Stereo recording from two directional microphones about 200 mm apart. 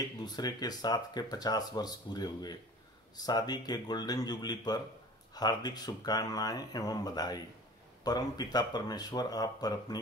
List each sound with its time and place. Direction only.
0.0 s speech: 20° left (ahead or behind)